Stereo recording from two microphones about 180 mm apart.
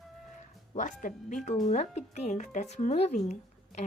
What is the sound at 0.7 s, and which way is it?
Speech, 45° left (ahead or behind).